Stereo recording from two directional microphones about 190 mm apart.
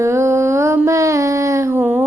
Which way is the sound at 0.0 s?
15° right (ahead or behind).